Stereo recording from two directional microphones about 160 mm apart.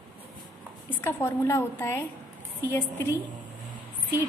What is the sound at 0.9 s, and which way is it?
A woman's voice, 15° left (ahead or behind).